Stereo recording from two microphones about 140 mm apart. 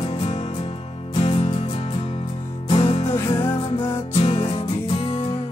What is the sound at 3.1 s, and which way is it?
Music, 20° left (ahead or behind).